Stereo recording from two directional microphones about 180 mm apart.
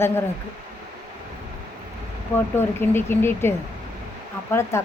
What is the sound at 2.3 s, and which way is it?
Speech, 10° left (ahead or behind).